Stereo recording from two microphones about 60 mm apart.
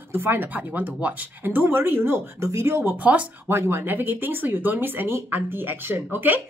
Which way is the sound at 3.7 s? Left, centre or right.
Right.